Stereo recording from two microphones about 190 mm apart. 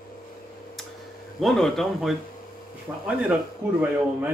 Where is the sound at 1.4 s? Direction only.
Centre (ahead or behind).